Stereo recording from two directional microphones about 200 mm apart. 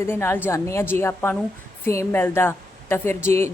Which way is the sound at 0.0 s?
10° left (ahead or behind).